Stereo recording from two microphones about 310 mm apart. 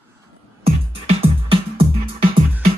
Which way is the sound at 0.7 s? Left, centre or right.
Centre.